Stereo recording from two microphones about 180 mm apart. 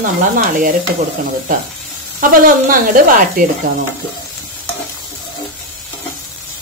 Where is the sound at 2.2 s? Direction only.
50° right (ahead or behind).